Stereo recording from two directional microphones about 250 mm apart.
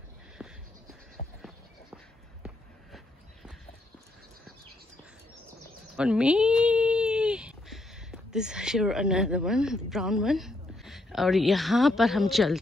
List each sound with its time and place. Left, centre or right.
0.4 s music: centre
1.2 s a sound: left
5.9 s speech: centre